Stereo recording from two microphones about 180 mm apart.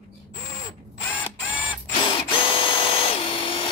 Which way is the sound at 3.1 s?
30° left (ahead or behind).